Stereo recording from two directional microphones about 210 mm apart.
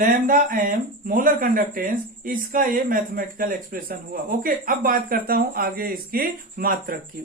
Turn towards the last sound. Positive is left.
turn(degrees=-45)  # may be behind; listen again after turning